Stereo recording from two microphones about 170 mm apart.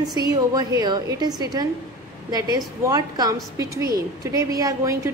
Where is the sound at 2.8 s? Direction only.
25° right (ahead or behind).